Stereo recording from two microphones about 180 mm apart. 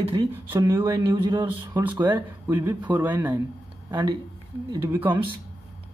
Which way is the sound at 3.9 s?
20° right (ahead or behind).